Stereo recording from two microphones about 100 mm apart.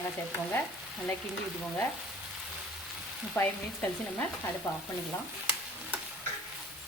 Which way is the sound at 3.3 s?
20° left (ahead or behind).